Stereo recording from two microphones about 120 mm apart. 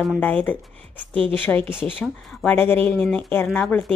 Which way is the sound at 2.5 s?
15° left (ahead or behind).